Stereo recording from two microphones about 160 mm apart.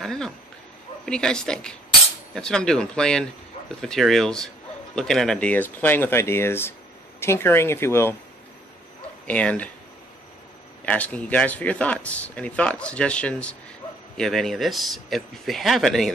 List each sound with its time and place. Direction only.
0.0 s a sound: 5° left (ahead or behind)
1.0 s speech: 5° left (ahead or behind)
9.3 s speech: 10° left (ahead or behind)
10.9 s speech: 10° left (ahead or behind)